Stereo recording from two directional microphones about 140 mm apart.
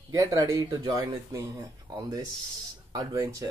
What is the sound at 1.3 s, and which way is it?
Speech, 25° right (ahead or behind).